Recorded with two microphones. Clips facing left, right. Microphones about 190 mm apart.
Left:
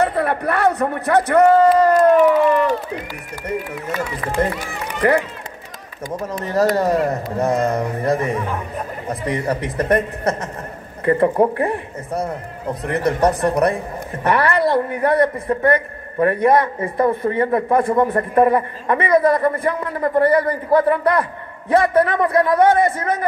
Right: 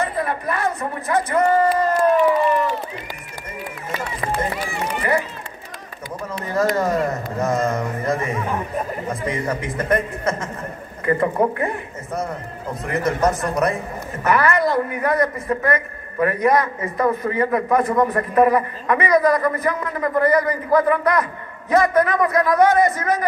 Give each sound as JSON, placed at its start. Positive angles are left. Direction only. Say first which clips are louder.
{"t": 0.0, "sound": "speech", "louder": "left 5 dB", "side_deg": 70}
{"t": 4.4, "sound": "speech", "louder": "left 7 dB", "side_deg": 65}
{"t": 6.0, "sound": "speech", "louder": "left 4 dB", "side_deg": 45}
{"t": 9.8, "sound": "a man's voice", "louder": "left 3 dB", "side_deg": 40}